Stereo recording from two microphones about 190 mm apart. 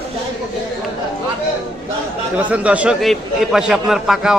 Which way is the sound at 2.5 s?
5° right (ahead or behind).